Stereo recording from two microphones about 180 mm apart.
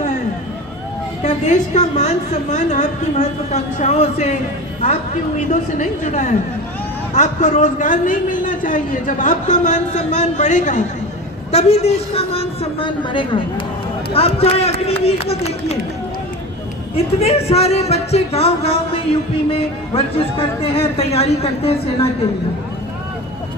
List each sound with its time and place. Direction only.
1.2 s a woman's voice: 40° left (ahead or behind)
5.5 s a man's voice: 45° left (ahead or behind)
16.9 s a woman's voice: 35° left (ahead or behind)